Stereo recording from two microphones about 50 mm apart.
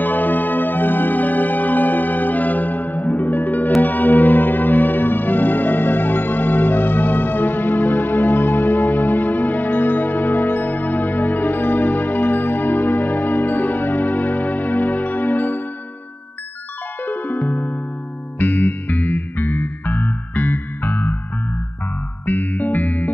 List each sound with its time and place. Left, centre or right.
0.0 s music: left
17.0 s music: left
22.2 s music: left